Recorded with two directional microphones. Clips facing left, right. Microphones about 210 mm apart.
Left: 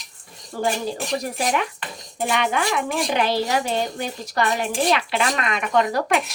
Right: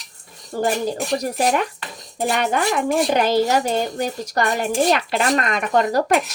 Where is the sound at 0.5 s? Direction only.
40° right (ahead or behind).